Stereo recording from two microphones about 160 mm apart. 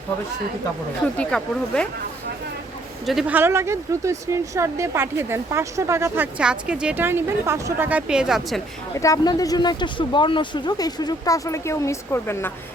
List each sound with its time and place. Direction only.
1.0 s speech: 10° left (ahead or behind)
3.1 s a woman's voice: centre (ahead or behind)
3.3 s speech: 15° right (ahead or behind)
6.4 s a woman's voice: 5° right (ahead or behind)
9.0 s speech: 20° left (ahead or behind)